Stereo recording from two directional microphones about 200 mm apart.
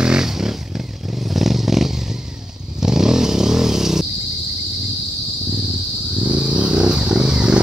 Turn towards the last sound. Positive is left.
turn(degrees=-5)  # may be behind; listen again after turning